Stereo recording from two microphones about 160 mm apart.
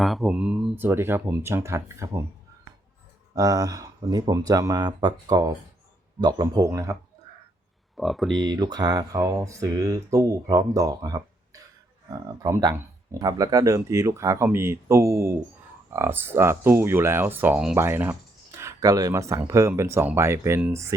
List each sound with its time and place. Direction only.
0.0 s speech: centre (ahead or behind); by 2.2 s 15° right (ahead or behind)
3.3 s speech: 20° right (ahead or behind)
7.9 s speech: centre (ahead or behind)
8.4 s speech: 25° right (ahead or behind)